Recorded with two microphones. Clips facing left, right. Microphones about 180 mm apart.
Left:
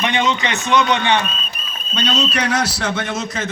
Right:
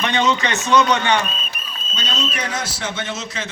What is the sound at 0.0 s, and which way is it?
A man's voice, 15° left (ahead or behind).